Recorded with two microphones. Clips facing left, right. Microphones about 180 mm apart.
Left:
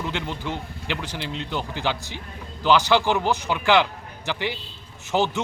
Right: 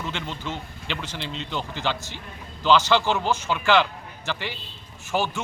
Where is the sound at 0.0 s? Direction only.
15° left (ahead or behind).